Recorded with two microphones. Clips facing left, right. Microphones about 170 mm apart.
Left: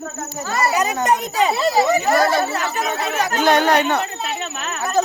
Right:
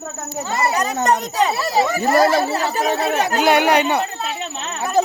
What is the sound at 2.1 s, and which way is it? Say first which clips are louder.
Speech: right 2 dB; 30° right (ahead or behind).